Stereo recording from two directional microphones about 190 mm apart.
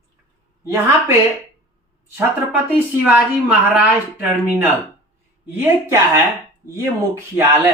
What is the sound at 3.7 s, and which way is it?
Speech, 10° right (ahead or behind).